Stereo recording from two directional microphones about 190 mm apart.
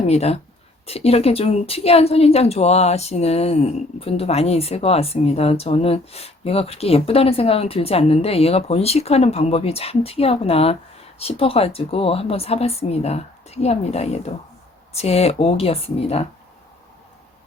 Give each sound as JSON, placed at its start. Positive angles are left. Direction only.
{"t": 0.1, "sound": "speech", "side_deg": 35}